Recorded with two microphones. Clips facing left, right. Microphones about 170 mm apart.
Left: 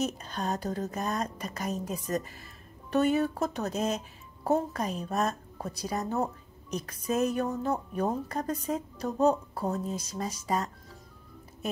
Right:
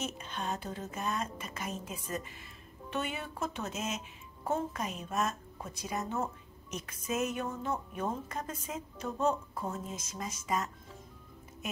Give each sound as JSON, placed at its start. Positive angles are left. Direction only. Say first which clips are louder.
{"t": 0.0, "sound": "speech", "louder": "left 6 dB", "side_deg": 40}